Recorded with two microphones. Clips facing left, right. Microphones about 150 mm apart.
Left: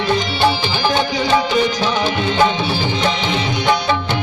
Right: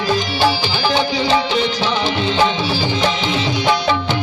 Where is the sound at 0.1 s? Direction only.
20° left (ahead or behind).